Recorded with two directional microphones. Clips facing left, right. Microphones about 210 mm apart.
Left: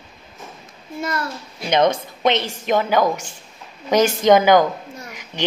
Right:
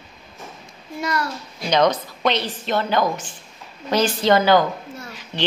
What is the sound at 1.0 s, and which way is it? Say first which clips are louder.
A child's voice: right 1 dB; 25° left (ahead or behind).